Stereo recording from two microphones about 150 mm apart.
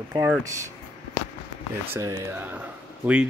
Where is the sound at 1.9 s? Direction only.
20° right (ahead or behind).